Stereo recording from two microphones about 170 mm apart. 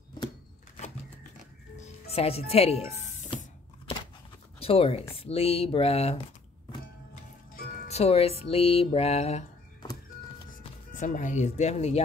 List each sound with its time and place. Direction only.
1.8 s music: 35° left (ahead or behind)
4.6 s speech: 35° left (ahead or behind)
5.1 s music: 35° left (ahead or behind)
7.9 s music: 35° left (ahead or behind)
11.0 s speech: 45° left (ahead or behind)